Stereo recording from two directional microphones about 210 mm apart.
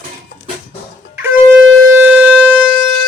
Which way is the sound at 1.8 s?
10° right (ahead or behind).